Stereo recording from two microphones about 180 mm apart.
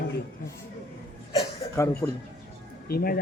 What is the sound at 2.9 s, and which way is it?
Speech, 55° left (ahead or behind).